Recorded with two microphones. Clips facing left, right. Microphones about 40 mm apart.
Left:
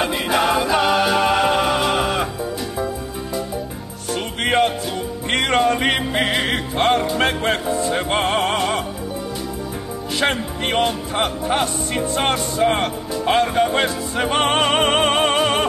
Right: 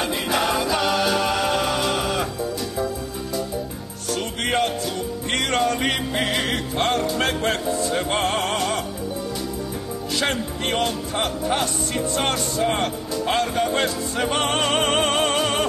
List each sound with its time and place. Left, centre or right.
0.0 s music: centre
4.1 s music: left
10.2 s music: left